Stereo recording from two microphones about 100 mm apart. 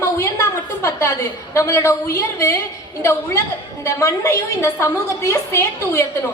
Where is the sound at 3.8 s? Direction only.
30° left (ahead or behind).